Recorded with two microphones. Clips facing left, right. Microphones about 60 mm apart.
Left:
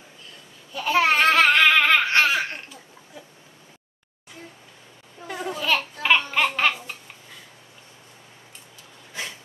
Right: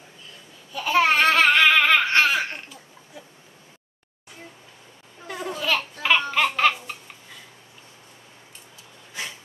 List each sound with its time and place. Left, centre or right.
0.7 s babbling: centre
5.2 s a sound: centre
5.9 s laughter: centre